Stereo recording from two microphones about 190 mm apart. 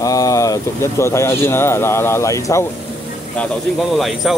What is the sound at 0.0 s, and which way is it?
Speech, 15° left (ahead or behind).